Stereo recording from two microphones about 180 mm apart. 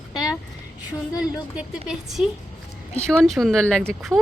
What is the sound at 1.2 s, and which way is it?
A woman's voice, 5° right (ahead or behind).